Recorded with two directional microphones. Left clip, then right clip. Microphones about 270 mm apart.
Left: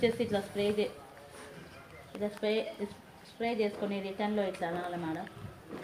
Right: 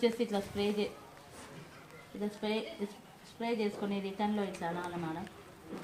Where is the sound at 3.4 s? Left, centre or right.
Right.